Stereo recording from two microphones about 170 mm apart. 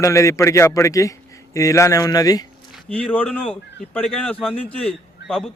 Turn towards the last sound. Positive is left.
turn(degrees=0)  # may be behind; listen again after turning